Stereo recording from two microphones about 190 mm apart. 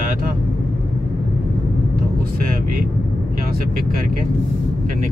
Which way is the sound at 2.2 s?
50° right (ahead or behind).